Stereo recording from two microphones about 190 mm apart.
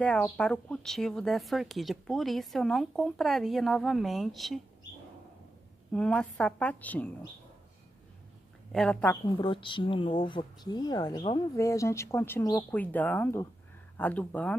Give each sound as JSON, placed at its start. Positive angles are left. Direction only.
{"t": 0.0, "sound": "speech", "side_deg": 5}
{"t": 5.9, "sound": "speech", "side_deg": 5}
{"t": 8.7, "sound": "speech", "side_deg": 5}
{"t": 9.4, "sound": "speech", "side_deg": 25}